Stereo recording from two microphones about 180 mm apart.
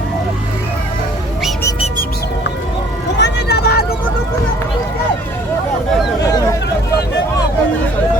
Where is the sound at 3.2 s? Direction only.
60° left (ahead or behind).